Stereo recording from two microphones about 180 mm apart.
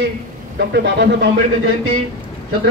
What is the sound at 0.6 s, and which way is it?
Speech, 70° right (ahead or behind).